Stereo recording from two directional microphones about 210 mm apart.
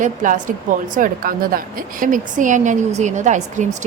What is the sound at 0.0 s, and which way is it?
A woman's voice, 40° right (ahead or behind).